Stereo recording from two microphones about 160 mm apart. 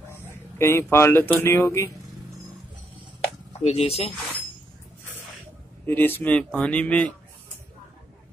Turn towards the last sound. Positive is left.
turn(degrees=10)  # may be behind; listen again after turning